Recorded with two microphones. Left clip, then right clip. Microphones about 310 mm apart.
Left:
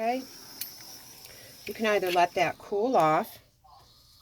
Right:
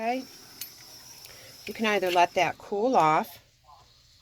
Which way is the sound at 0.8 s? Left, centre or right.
Centre.